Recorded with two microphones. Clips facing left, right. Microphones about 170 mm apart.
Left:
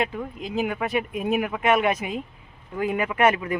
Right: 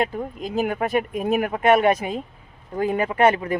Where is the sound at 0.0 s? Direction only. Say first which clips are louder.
Right 3 dB; 40° right (ahead or behind).